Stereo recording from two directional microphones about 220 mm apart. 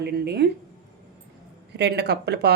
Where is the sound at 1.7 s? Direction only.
50° right (ahead or behind).